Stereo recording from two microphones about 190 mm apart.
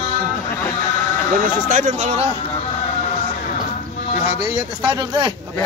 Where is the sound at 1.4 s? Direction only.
40° right (ahead or behind).